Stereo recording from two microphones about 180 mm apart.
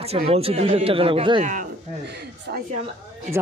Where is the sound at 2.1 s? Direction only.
65° right (ahead or behind).